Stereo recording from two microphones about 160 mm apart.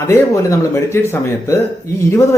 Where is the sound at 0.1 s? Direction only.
20° left (ahead or behind).